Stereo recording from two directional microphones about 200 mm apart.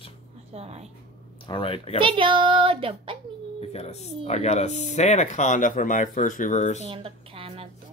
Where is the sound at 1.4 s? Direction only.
25° left (ahead or behind).